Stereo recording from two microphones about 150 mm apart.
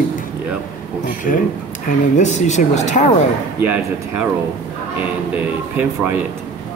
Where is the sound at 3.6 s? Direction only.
10° right (ahead or behind).